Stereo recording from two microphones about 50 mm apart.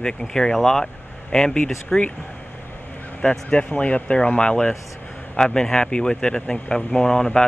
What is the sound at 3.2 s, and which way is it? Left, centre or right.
Speech, left.